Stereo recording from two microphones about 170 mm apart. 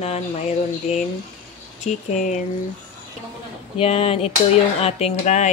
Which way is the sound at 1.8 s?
45° left (ahead or behind).